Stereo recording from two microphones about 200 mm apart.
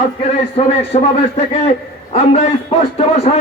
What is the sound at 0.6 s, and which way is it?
A man's voice, 30° left (ahead or behind).